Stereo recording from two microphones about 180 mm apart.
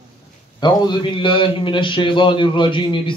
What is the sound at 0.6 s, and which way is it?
A man's voice, 25° left (ahead or behind).